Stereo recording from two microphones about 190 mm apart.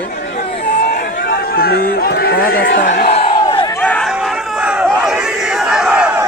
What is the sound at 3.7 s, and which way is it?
Crowd, 5° left (ahead or behind).